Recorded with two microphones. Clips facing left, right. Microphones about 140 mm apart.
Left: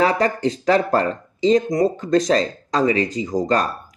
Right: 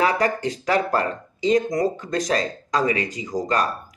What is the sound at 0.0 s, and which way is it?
Speech, 30° left (ahead or behind).